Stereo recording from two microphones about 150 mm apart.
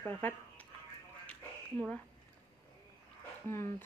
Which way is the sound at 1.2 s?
10° left (ahead or behind).